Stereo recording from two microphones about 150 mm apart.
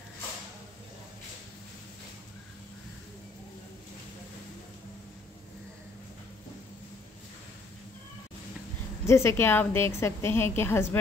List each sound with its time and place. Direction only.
9.0 s a woman's voice: 20° left (ahead or behind)